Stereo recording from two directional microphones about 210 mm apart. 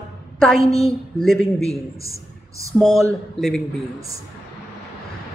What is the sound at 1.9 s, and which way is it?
Speech, 15° right (ahead or behind).